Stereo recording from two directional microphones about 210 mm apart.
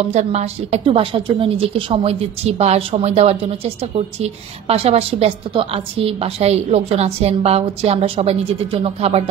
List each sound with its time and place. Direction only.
0.1 s a woman's voice: 30° right (ahead or behind)